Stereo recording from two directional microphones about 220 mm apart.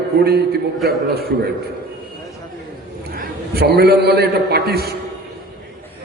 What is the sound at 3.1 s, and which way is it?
A man's voice, 45° right (ahead or behind).